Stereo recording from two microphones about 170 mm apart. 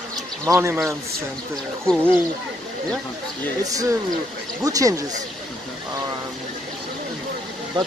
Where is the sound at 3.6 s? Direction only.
20° right (ahead or behind).